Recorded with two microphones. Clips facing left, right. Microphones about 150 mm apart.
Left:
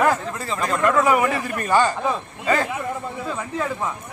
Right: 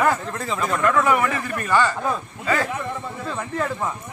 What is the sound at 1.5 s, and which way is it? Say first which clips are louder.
Speech: left 1 dB; 20° left (ahead or behind).